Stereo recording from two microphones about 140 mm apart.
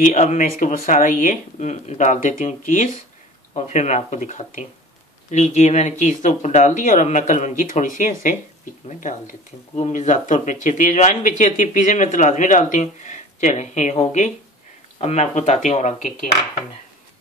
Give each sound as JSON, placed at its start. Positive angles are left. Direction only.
{"t": 0.0, "sound": "speech", "side_deg": 55}